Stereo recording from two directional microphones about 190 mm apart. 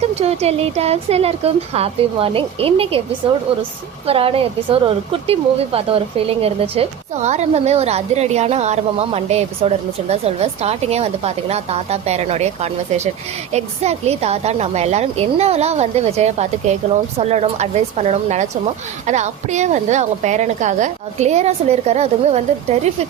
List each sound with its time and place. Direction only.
0.2 s a woman's voice: 35° right (ahead or behind)